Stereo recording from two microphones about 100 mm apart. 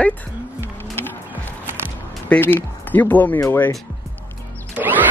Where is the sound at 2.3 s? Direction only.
20° left (ahead or behind).